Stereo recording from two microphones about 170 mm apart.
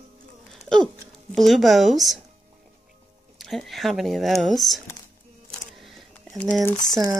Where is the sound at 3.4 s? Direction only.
Centre (ahead or behind).